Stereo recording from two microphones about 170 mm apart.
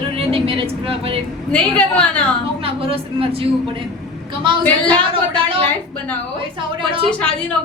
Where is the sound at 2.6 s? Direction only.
35° right (ahead or behind).